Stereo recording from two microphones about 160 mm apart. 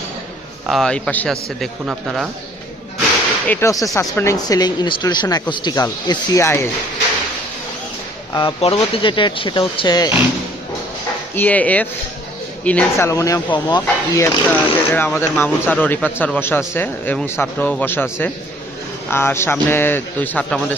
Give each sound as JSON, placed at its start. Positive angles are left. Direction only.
{"t": 0.7, "sound": "a man's voice", "side_deg": 5}
{"t": 3.4, "sound": "speech", "side_deg": 15}
{"t": 8.3, "sound": "speech", "side_deg": 20}
{"t": 8.6, "sound": "speech", "side_deg": 35}
{"t": 11.3, "sound": "speech", "side_deg": 10}
{"t": 13.1, "sound": "speech", "side_deg": 20}
{"t": 14.1, "sound": "speech", "side_deg": 15}